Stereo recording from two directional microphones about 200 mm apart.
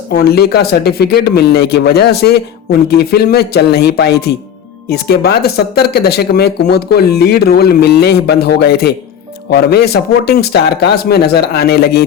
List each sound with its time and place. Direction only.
0.1 s speech: 50° left (ahead or behind)